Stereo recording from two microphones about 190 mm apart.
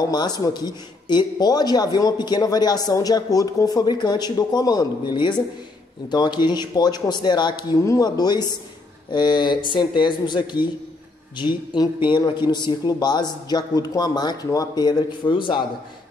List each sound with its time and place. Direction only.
0.1 s a man's voice: 20° left (ahead or behind)